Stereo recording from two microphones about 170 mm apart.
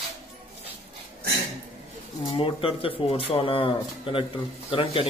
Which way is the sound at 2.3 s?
35° left (ahead or behind).